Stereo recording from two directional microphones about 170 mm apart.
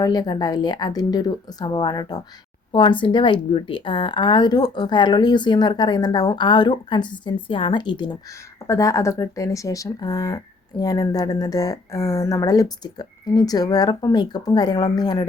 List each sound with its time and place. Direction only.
0.0 s speech: 20° left (ahead or behind)